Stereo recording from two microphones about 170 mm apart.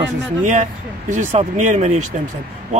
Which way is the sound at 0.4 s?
45° right (ahead or behind).